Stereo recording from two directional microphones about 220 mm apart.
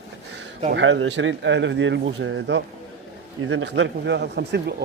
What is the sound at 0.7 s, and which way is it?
Speech, 55° right (ahead or behind).